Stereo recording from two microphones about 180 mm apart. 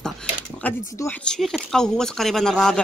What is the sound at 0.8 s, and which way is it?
Speech, 15° left (ahead or behind).